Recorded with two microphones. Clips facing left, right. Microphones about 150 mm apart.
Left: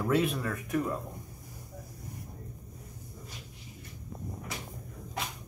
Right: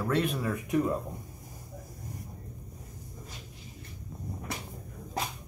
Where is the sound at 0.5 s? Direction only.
15° right (ahead or behind).